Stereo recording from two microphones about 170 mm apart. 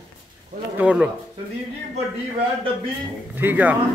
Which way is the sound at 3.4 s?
10° right (ahead or behind).